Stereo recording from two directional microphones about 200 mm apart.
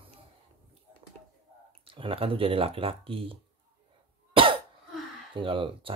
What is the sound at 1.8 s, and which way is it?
Speech, 25° right (ahead or behind).